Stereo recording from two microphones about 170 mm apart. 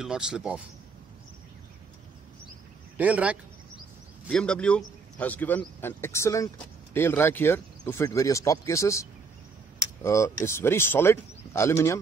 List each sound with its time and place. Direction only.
0.0 s speech: 5° right (ahead or behind)
3.0 s a man's voice: 10° right (ahead or behind)
4.3 s speech: 5° left (ahead or behind)
10.0 s speech: 15° left (ahead or behind)